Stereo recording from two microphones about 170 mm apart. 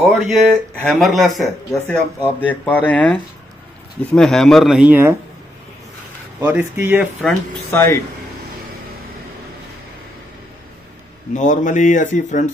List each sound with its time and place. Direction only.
0.0 s speech: 5° left (ahead or behind)
6.4 s speech: 10° right (ahead or behind)
7.2 s speech: 10° left (ahead or behind)
11.3 s speech: 45° left (ahead or behind)